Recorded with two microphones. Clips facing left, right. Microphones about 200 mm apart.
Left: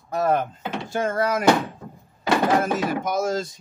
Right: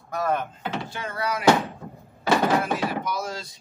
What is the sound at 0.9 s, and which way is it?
Speech, 45° left (ahead or behind).